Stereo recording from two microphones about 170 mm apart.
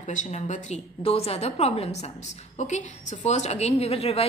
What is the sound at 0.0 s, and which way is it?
A woman's voice, 45° left (ahead or behind).